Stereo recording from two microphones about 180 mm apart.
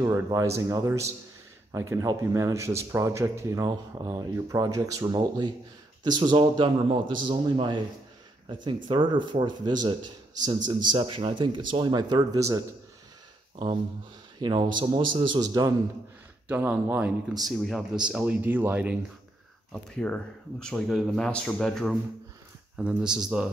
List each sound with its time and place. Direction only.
0.0 s speech: 20° right (ahead or behind)
8.8 s speech: 25° right (ahead or behind)
14.4 s speech: 25° right (ahead or behind)
16.4 s speech: 10° right (ahead or behind)
19.7 s a man's voice: 5° left (ahead or behind)